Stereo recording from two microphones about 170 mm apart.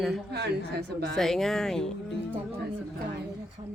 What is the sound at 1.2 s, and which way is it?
Speech, centre (ahead or behind).